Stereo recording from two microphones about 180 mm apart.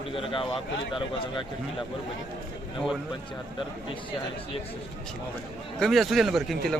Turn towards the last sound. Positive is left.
turn(degrees=0)  # may be behind; listen again after turning